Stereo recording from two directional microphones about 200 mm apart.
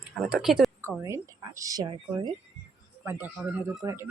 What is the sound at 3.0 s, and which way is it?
Speech, 10° right (ahead or behind).